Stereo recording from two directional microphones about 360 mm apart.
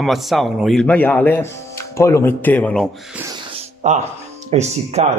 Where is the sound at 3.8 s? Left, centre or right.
Centre.